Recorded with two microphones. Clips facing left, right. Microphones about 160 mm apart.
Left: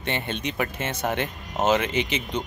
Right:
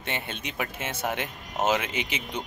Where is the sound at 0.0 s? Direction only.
5° right (ahead or behind).